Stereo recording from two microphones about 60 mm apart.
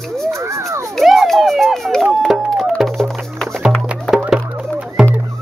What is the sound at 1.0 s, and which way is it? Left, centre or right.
Run, centre.